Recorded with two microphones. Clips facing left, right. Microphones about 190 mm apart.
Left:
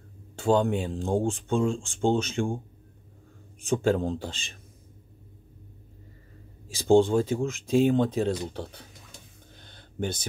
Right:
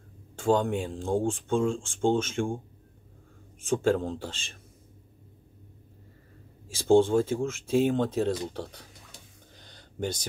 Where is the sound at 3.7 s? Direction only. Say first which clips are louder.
Left 1 dB; 15° left (ahead or behind).